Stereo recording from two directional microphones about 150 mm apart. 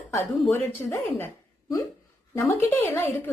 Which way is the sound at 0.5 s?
15° left (ahead or behind).